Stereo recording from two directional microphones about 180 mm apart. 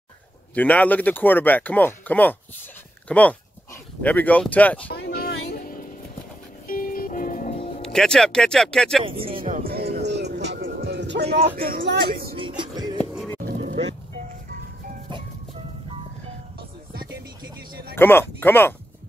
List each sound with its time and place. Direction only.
0.6 s speech: 10° left (ahead or behind)
4.9 s music: 60° left (ahead or behind)
7.8 s speech: 5° left (ahead or behind)
9.0 s speech: 30° right (ahead or behind)
9.5 s music: 55° right (ahead or behind)
10.0 s music: 70° right (ahead or behind)
11.4 s speech: 55° right (ahead or behind)
12.4 s music: 25° right (ahead or behind)
13.4 s roaring cats: 55° right (ahead or behind)
17.9 s speech: 10° left (ahead or behind)